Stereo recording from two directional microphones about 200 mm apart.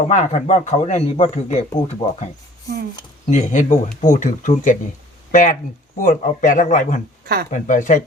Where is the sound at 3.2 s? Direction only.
35° left (ahead or behind).